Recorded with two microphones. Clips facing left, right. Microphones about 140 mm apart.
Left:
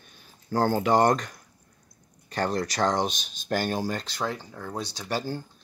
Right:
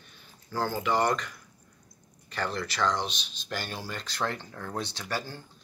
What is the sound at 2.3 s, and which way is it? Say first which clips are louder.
Speech: left 5 dB; 40° left (ahead or behind).